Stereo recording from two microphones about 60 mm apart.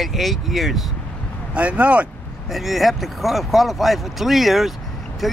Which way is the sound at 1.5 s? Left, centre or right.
Right.